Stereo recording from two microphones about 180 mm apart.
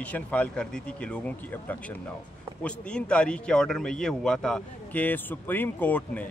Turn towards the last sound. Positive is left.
turn(degrees=10)  # may be behind; listen again after turning